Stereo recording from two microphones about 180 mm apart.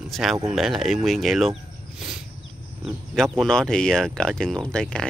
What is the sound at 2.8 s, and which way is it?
Speech, centre (ahead or behind).